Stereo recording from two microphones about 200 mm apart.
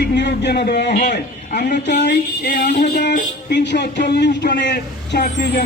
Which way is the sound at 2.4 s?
50° left (ahead or behind).